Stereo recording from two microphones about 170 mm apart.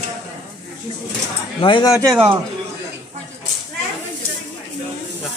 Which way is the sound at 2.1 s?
30° right (ahead or behind).